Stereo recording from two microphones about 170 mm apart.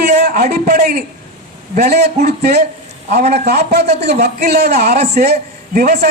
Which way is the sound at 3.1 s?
70° right (ahead or behind).